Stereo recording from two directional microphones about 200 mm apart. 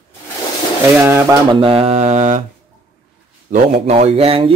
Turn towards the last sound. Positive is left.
turn(degrees=-30)  # may be behind; listen again after turning